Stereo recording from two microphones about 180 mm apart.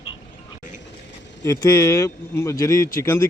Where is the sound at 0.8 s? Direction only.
80° left.